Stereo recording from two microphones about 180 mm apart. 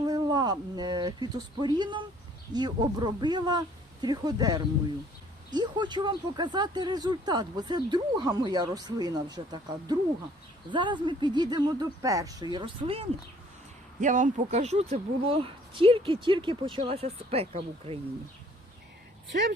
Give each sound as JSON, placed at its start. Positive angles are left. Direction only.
{"t": 0.0, "sound": "speech", "side_deg": -25}
{"t": 14.0, "sound": "speech", "side_deg": -45}
{"t": 19.3, "sound": "speech", "side_deg": -75}